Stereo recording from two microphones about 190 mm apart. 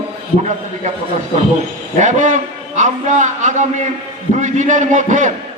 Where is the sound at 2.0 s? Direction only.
40° right (ahead or behind).